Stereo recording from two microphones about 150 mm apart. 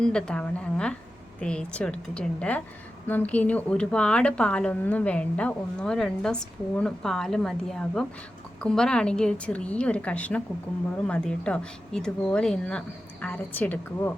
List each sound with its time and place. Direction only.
0.0 s speech: 5° left (ahead or behind)